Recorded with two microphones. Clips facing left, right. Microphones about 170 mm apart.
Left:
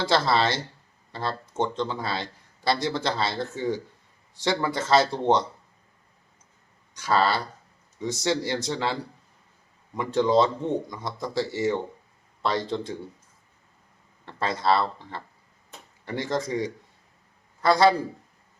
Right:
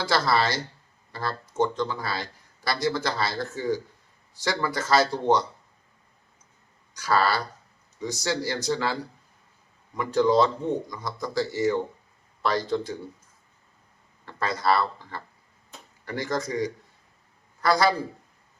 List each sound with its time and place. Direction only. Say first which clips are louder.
0.0 s speech: left 1 dB; 25° left (ahead or behind)
6.9 s speech: even; 25° left (ahead or behind)
14.3 s speech: left 1 dB; 25° left (ahead or behind)